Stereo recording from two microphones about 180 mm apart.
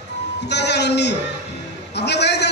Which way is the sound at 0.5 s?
70° left (ahead or behind).